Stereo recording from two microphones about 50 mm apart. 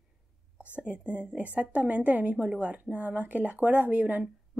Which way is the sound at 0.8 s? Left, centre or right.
Right.